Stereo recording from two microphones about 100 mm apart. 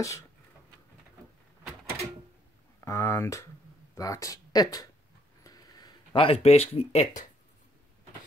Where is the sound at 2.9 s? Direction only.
30° left (ahead or behind).